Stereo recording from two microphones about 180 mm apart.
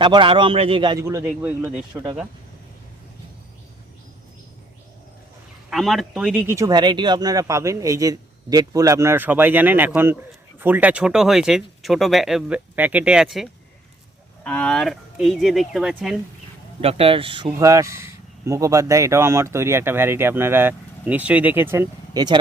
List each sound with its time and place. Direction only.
0.0 s a man's voice: 30° right (ahead or behind)
1.0 s speech: 10° right (ahead or behind)
5.7 s speech: centre (ahead or behind)
16.8 s speech: 30° right (ahead or behind)